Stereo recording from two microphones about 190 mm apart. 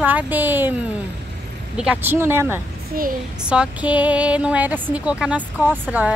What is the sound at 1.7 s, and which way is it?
Speech, 5° right (ahead or behind).